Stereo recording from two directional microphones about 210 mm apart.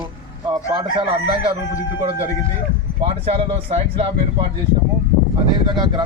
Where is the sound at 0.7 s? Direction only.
20° right (ahead or behind).